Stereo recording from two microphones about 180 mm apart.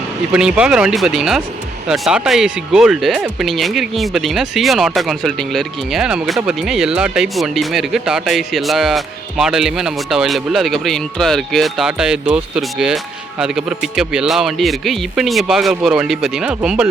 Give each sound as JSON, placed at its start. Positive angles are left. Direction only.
{"t": 0.3, "sound": "speech", "side_deg": -5}